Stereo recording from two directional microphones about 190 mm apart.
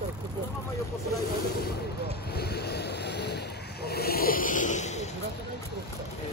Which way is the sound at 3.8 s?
55° left (ahead or behind).